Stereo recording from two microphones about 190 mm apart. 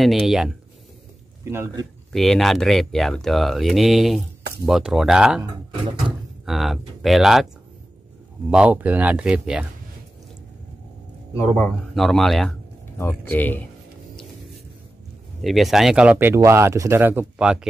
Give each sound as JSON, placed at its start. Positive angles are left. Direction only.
{"t": 0.0, "sound": "speech", "side_deg": 0}
{"t": 1.4, "sound": "speech", "side_deg": -15}
{"t": 2.1, "sound": "speech", "side_deg": 0}
{"t": 5.4, "sound": "speech", "side_deg": -25}
{"t": 6.4, "sound": "speech", "side_deg": 0}
{"t": 8.5, "sound": "speech", "side_deg": -5}
{"t": 11.4, "sound": "speech", "side_deg": 0}
{"t": 15.4, "sound": "speech", "side_deg": 0}